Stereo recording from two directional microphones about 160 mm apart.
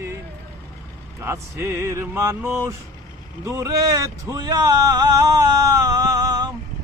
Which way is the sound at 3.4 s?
20° right (ahead or behind).